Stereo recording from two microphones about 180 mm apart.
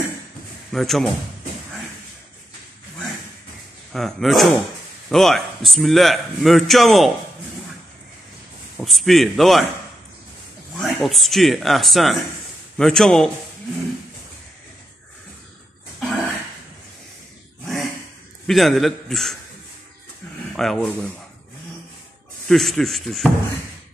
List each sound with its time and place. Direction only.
0.7 s speech: centre (ahead or behind)
3.9 s a man's voice: centre (ahead or behind)
8.7 s a man's voice: centre (ahead or behind)
10.8 s a man's voice: centre (ahead or behind)
16.0 s cough: centre (ahead or behind)
18.5 s a man's voice: centre (ahead or behind)
20.5 s a man's voice: centre (ahead or behind)
22.5 s a man's voice: centre (ahead or behind)